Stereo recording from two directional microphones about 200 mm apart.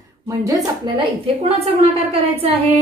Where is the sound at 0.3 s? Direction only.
15° right (ahead or behind); by 1.9 s 30° right (ahead or behind).